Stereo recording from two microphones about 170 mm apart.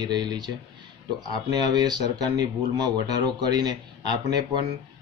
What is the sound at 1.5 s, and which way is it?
Speech, 25° right (ahead or behind).